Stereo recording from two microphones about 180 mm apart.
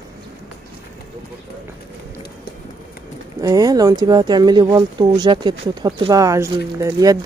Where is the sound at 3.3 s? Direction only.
20° right (ahead or behind).